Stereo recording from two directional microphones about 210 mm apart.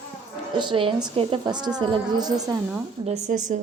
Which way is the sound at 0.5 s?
25° right (ahead or behind).